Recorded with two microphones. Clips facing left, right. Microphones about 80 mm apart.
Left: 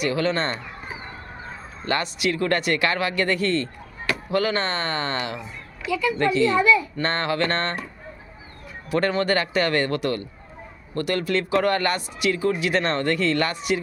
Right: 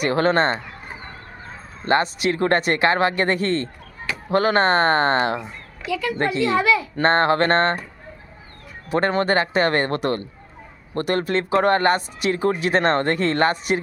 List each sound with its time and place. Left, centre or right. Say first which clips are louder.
0.0 s speech: right 5 dB; right
1.9 s speech: right 5 dB; right
6.6 s a child's voice: left 1 dB; right
7.0 s speech: right 6 dB; right
8.9 s speech: right 2 dB; right